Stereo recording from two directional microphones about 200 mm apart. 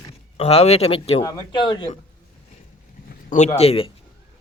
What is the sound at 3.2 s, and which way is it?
Speech, 35° left (ahead or behind).